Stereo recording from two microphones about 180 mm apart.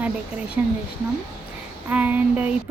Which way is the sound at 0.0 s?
10° right (ahead or behind).